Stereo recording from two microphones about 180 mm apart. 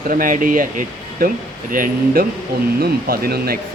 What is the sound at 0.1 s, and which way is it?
Speech, 50° right (ahead or behind).